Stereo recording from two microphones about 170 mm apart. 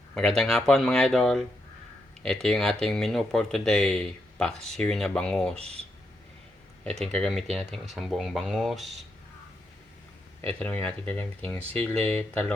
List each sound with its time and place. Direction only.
0.1 s speech: 5° left (ahead or behind)
5.5 s speech: 35° right (ahead or behind)
6.8 s speech: 5° left (ahead or behind)
10.5 s speech: 10° left (ahead or behind)